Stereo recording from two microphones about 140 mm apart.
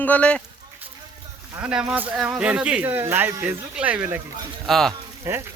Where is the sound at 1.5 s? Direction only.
10° right (ahead or behind).